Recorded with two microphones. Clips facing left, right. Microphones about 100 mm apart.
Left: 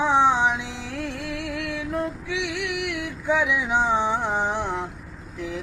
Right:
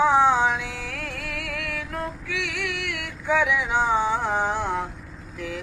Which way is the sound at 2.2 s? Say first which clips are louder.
Left 2 dB; 20° left (ahead or behind).